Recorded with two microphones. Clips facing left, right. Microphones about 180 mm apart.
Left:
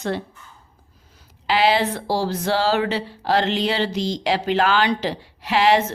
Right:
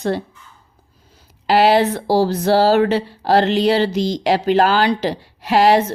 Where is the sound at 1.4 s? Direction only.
45° right (ahead or behind).